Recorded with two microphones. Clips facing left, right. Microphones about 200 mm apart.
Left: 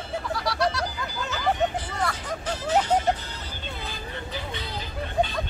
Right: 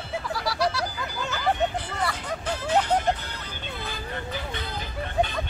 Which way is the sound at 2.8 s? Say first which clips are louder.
Left 1 dB; 60° right (ahead or behind).